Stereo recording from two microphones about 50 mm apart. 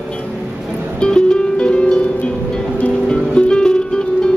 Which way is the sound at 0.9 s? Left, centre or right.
Centre.